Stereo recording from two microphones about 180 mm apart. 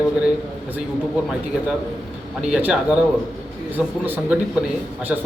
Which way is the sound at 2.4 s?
5° right (ahead or behind).